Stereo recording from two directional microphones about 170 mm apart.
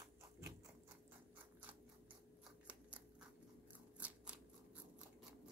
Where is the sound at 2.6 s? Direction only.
10° right (ahead or behind).